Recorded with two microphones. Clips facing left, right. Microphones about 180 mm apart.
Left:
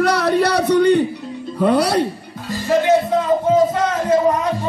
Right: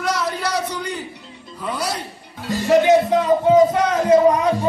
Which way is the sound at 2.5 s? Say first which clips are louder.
Right 1 dB; 15° right (ahead or behind).